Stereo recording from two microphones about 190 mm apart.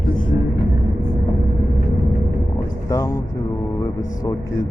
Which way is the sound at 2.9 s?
15° left (ahead or behind).